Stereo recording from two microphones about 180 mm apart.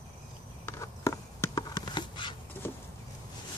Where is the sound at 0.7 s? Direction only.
15° left (ahead or behind).